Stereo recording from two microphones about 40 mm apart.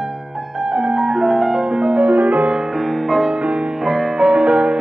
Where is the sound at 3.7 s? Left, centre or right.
Centre.